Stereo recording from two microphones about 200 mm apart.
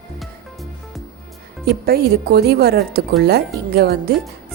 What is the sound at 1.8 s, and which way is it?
Speech, 50° right (ahead or behind).